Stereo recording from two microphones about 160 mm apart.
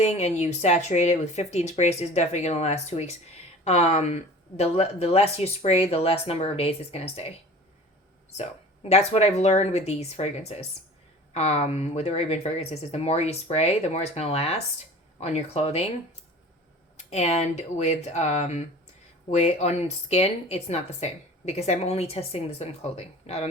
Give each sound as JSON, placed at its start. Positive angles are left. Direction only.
{"t": 0.0, "sound": "speech", "side_deg": 40}
{"t": 8.4, "sound": "speech", "side_deg": 40}
{"t": 17.0, "sound": "speech", "side_deg": 45}